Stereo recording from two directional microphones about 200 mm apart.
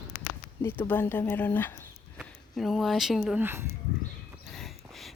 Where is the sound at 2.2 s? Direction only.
Centre (ahead or behind).